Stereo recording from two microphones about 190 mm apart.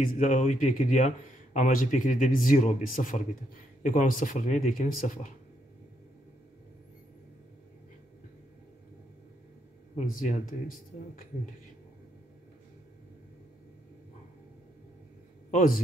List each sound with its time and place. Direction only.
0.0 s speech: 40° left (ahead or behind)
9.9 s speech: 40° left (ahead or behind)
15.5 s speech: 45° left (ahead or behind)